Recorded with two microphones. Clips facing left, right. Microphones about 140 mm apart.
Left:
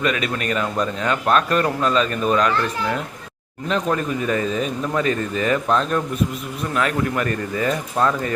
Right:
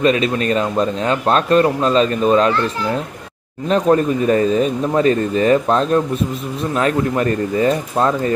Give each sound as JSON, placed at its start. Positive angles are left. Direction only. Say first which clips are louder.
{"t": 0.0, "sound": "a man's voice", "louder": "right 7 dB", "side_deg": -30}
{"t": 3.7, "sound": "speech", "louder": "right 7 dB", "side_deg": -35}